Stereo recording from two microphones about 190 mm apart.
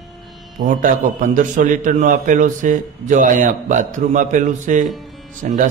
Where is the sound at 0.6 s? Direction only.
50° right (ahead or behind).